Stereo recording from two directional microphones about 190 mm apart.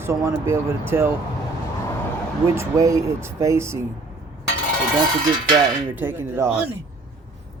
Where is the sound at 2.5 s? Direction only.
15° right (ahead or behind).